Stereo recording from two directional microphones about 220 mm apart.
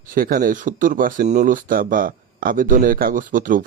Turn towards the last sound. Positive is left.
turn(degrees=-35)  # may be behind; listen again after turning